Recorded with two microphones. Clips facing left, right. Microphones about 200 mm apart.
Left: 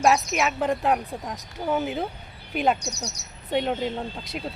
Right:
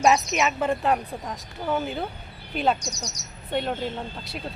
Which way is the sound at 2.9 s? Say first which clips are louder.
Left 2 dB; 60° left (ahead or behind).